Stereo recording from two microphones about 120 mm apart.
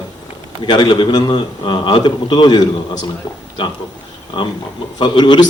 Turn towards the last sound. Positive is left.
turn(degrees=40)  # may be behind; listen again after turning